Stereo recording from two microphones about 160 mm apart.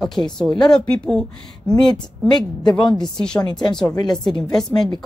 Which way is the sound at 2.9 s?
5° left (ahead or behind).